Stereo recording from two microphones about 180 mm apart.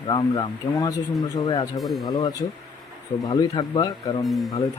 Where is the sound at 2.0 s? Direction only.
20° left (ahead or behind).